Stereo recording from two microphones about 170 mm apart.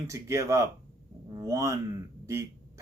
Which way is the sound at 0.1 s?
15° right (ahead or behind).